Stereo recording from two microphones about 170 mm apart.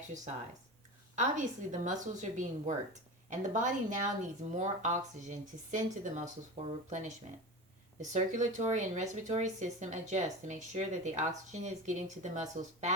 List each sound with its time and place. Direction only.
1.1 s speech: 45° right (ahead or behind)
8.1 s speech: 45° right (ahead or behind)